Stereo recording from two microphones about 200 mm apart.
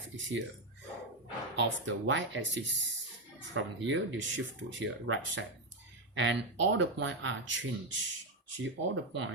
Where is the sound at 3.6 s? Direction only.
70° right (ahead or behind).